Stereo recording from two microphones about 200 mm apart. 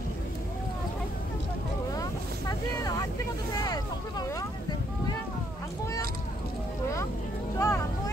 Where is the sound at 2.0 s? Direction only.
15° left (ahead or behind).